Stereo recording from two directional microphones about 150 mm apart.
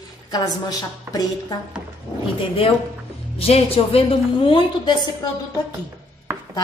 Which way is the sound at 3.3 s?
40° left (ahead or behind).